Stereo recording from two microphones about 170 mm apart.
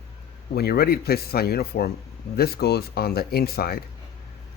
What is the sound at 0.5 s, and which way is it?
A man's voice, 65° left (ahead or behind).